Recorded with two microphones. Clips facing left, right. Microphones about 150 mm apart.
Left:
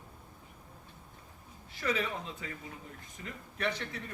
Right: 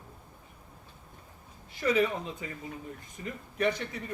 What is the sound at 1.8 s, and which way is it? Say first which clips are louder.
A man's voice: right 7 dB; 20° right (ahead or behind).